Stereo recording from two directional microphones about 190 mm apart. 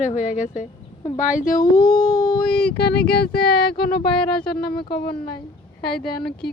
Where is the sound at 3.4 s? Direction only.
55° left (ahead or behind).